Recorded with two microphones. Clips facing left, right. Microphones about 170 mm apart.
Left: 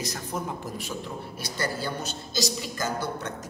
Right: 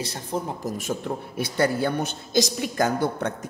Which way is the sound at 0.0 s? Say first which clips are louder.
Right 3 dB; 30° right (ahead or behind).